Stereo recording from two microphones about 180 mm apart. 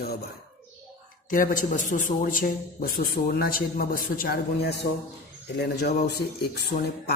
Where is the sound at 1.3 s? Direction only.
50° left (ahead or behind).